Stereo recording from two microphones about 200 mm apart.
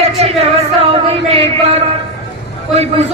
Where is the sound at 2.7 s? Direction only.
30° right (ahead or behind).